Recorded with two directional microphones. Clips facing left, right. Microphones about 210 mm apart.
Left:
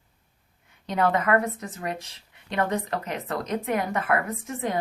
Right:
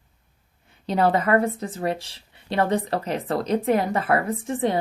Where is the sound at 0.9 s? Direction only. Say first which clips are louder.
Right 3 dB; 30° right (ahead or behind).